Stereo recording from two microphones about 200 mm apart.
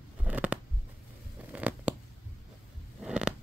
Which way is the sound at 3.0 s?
5° right (ahead or behind).